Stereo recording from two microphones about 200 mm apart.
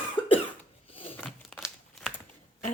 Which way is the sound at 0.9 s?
25° left (ahead or behind).